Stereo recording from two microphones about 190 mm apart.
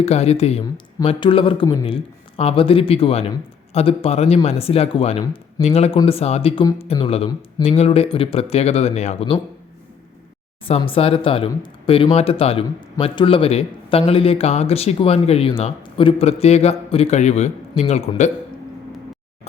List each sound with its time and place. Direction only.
0.0 s speech: 35° left (ahead or behind)
5.2 s speech: 20° left (ahead or behind)
5.6 s speech: 35° left (ahead or behind)
10.7 s speech: 30° left (ahead or behind)